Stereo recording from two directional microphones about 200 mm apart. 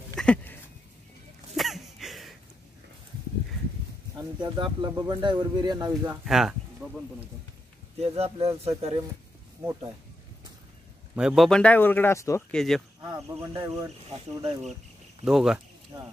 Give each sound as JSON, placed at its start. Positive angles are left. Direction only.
{"t": 0.1, "sound": "a sound", "side_deg": 5}
{"t": 4.2, "sound": "speech", "side_deg": -20}
{"t": 6.2, "sound": "speech", "side_deg": 0}
{"t": 8.0, "sound": "speech", "side_deg": -30}
{"t": 11.1, "sound": "speech", "side_deg": 0}
{"t": 13.0, "sound": "speech", "side_deg": -15}
{"t": 14.0, "sound": "speech", "side_deg": -30}
{"t": 15.2, "sound": "speech", "side_deg": 0}
{"t": 15.9, "sound": "speech", "side_deg": -20}